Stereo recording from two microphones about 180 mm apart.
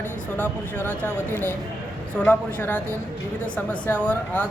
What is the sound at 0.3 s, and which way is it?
Speech, 10° left (ahead or behind).